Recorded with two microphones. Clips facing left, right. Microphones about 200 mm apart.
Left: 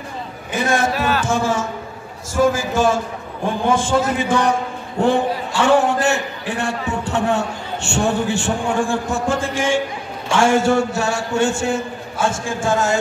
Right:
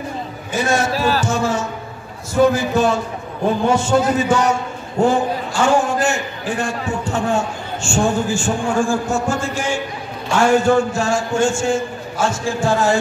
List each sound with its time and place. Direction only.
0.5 s a man's voice: 55° left (ahead or behind)
0.9 s music: 35° right (ahead or behind)
1.4 s a man's voice: 90° left
2.4 s a man's voice: 45° left (ahead or behind)
10.3 s a man's voice: 80° left; by 13.0 s 45° left (ahead or behind)